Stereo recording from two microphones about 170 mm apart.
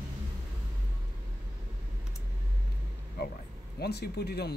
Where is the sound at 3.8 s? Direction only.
70° left (ahead or behind).